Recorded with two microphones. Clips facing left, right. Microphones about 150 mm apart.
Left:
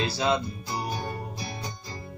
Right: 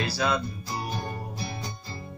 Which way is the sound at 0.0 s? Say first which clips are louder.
Left 1 dB; 25° left (ahead or behind).